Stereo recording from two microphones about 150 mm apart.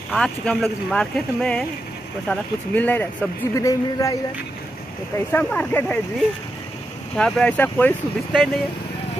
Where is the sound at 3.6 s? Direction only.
20° left (ahead or behind).